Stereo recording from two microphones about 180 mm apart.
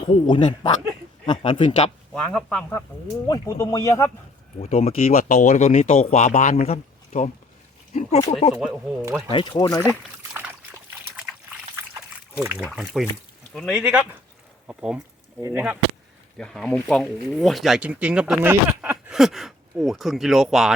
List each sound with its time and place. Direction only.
0.1 s speech: 30° left (ahead or behind)
2.1 s speech: 5° left (ahead or behind)
3.2 s speech: 20° left (ahead or behind)
4.6 s speech: 35° left (ahead or behind)
8.3 s speech: 35° left (ahead or behind)
9.0 s speech: 15° right (ahead or behind)
9.3 s speech: 25° left (ahead or behind)
11.2 s trickle: 5° right (ahead or behind)
12.4 s speech: 10° right (ahead or behind)
15.4 s speech: 20° right (ahead or behind)
16.4 s speech: 5° left (ahead or behind)